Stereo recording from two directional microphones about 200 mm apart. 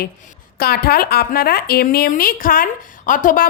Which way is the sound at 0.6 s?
50° left (ahead or behind).